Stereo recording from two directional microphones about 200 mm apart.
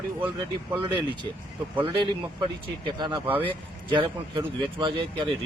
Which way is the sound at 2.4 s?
20° right (ahead or behind).